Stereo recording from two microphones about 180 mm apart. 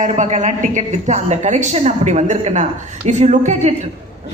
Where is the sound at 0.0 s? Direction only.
45° right (ahead or behind).